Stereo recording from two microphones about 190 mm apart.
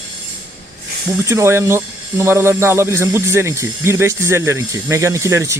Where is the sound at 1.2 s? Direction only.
15° right (ahead or behind).